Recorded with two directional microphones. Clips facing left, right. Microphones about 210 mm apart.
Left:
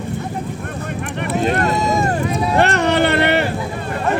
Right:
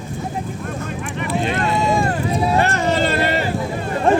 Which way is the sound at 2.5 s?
70° left (ahead or behind).